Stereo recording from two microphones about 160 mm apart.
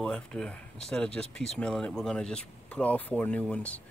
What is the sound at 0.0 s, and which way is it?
Speech, 5° left (ahead or behind).